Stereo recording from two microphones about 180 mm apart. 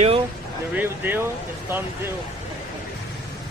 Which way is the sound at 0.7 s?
10° right (ahead or behind).